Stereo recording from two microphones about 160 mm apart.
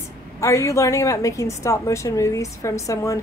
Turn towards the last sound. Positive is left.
turn(degrees=20)  # may be behind; listen again after turning